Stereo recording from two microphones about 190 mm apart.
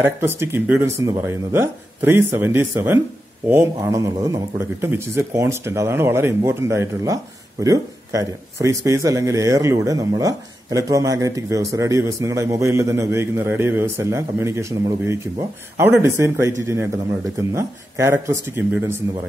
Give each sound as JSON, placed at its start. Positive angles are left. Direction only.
{"t": 0.0, "sound": "speech", "side_deg": -10}